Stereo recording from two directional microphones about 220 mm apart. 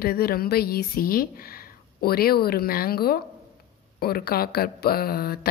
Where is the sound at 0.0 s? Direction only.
45° left (ahead or behind).